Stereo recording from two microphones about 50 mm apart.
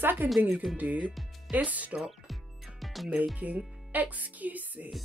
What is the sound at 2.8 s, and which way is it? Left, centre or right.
Music, centre.